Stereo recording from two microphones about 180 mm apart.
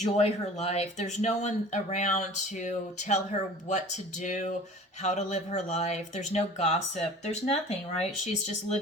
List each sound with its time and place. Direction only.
0.0 s speech: 40° left (ahead or behind)